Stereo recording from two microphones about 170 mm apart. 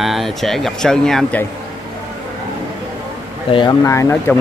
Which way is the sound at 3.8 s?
15° left (ahead or behind).